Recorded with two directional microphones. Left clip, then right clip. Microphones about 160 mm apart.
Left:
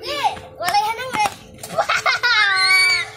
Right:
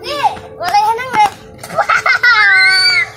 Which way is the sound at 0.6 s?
35° left (ahead or behind).